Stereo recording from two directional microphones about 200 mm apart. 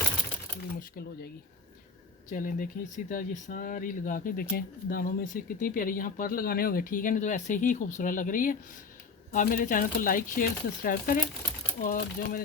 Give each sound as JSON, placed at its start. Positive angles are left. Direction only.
{"t": 0.8, "sound": "speech", "side_deg": 50}
{"t": 2.3, "sound": "speech", "side_deg": 45}